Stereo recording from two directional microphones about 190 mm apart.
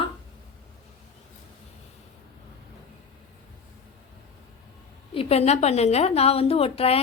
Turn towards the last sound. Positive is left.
turn(degrees=30)  # may be behind; listen again after turning